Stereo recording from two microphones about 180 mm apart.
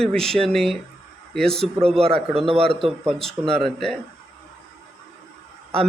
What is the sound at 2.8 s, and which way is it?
Speech, centre (ahead or behind).